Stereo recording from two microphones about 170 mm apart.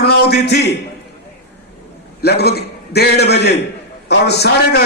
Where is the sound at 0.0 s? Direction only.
70° left (ahead or behind).